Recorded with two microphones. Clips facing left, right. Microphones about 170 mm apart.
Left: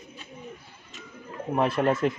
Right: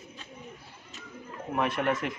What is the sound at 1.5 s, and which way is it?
Speech, 30° left (ahead or behind).